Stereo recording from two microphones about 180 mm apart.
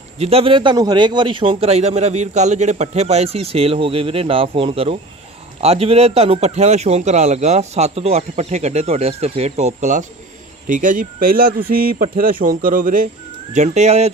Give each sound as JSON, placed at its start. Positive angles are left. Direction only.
{"t": 0.2, "sound": "a man's voice", "side_deg": -35}